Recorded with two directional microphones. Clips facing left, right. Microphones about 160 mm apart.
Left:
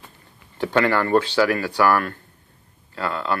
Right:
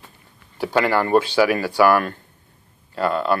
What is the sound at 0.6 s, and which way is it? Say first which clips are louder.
Speech: right 1 dB; 10° right (ahead or behind).